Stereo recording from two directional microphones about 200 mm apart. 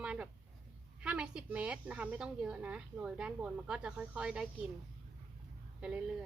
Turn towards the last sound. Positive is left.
turn(degrees=-5)  # may be behind; listen again after turning